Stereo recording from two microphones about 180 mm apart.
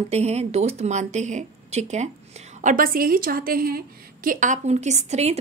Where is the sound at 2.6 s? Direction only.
50° right (ahead or behind).